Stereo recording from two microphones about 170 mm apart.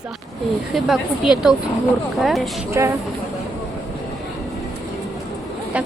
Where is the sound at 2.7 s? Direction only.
15° right (ahead or behind).